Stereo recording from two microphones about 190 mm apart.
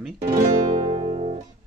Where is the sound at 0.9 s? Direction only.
35° right (ahead or behind).